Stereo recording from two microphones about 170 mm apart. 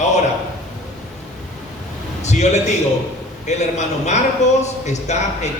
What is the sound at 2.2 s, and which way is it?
A man's voice, 40° left (ahead or behind).